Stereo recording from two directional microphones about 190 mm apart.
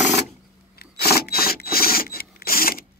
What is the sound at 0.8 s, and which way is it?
Tools, 55° left (ahead or behind).